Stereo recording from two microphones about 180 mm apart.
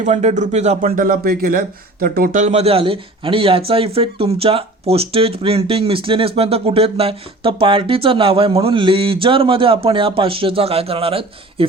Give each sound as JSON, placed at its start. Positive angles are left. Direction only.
{"t": 0.0, "sound": "speech", "side_deg": -40}
{"t": 0.9, "sound": "speech", "side_deg": -50}